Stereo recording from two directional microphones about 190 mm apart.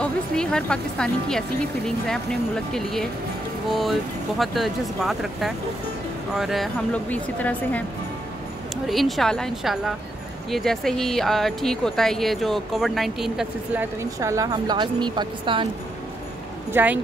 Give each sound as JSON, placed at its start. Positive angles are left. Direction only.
{"t": 0.0, "sound": "speech", "side_deg": 5}
{"t": 2.7, "sound": "speech", "side_deg": 0}
{"t": 4.4, "sound": "speech", "side_deg": 0}
{"t": 8.8, "sound": "speech", "side_deg": 0}
{"t": 14.2, "sound": "speech", "side_deg": -15}
{"t": 16.7, "sound": "speech", "side_deg": -10}